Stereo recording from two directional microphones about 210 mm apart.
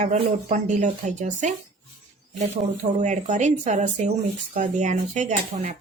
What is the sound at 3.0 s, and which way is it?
Speech, 35° right (ahead or behind).